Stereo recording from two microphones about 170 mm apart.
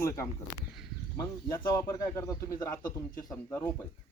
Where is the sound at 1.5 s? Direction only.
15° left (ahead or behind).